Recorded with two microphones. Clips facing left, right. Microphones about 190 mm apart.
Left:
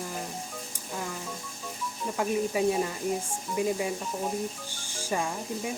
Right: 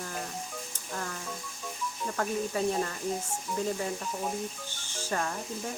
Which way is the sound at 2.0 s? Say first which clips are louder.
Left 3 dB; 10° left (ahead or behind).